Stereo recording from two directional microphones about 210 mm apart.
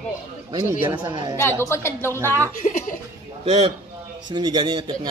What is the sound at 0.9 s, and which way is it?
Speech, 20° right (ahead or behind).